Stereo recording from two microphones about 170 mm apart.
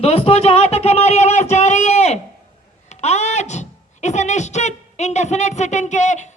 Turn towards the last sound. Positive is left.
turn(degrees=45)  # may be behind; listen again after turning